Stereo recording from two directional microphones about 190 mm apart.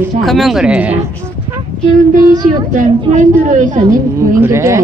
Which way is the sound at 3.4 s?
40° right (ahead or behind).